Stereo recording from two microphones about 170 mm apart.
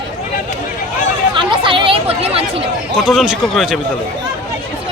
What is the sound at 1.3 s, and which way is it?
Speech, 30° right (ahead or behind).